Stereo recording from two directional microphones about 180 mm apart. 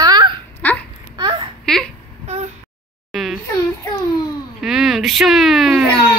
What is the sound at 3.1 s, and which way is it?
Babbling, centre (ahead or behind).